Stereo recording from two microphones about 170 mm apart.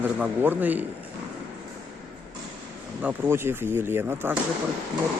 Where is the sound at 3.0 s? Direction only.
10° right (ahead or behind).